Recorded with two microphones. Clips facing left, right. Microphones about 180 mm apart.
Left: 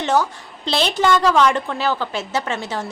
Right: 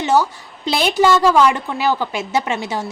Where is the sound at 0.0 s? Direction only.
10° right (ahead or behind).